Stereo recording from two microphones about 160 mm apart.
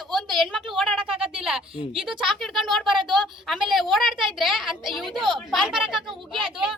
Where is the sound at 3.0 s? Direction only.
30° right (ahead or behind).